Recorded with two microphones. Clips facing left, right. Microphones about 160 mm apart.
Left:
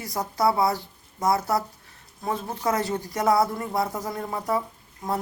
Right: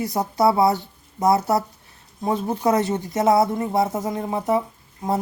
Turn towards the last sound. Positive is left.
turn(degrees=-20)  # may be behind; listen again after turning